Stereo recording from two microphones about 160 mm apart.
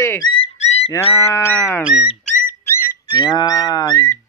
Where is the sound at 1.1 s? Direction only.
15° left (ahead or behind).